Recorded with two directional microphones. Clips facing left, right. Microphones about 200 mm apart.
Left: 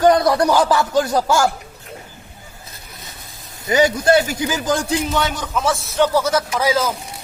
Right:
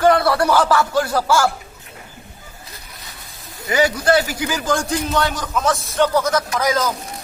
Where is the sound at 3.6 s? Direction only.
20° left (ahead or behind).